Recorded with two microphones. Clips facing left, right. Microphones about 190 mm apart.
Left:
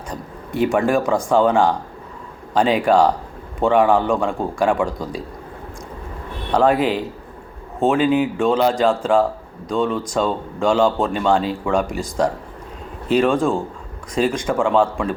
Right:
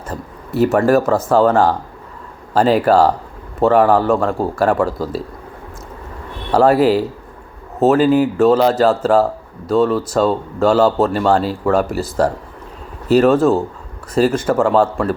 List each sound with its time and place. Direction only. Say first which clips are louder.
0.1 s speech: right 4 dB; 5° right (ahead or behind)
6.5 s speech: right 5 dB; 5° right (ahead or behind)
8.0 s speech: right 4 dB; 40° right (ahead or behind)
8.4 s speech: right 5 dB; 5° right (ahead or behind)